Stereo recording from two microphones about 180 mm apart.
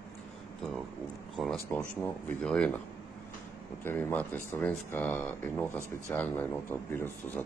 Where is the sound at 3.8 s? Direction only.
10° left (ahead or behind).